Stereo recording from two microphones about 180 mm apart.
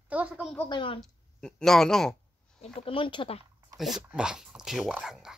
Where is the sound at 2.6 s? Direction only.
30° left (ahead or behind).